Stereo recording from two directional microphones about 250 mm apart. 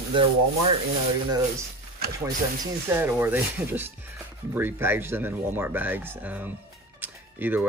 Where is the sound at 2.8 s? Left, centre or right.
Centre.